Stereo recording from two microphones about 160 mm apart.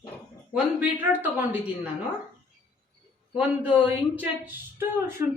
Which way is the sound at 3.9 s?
10° right (ahead or behind).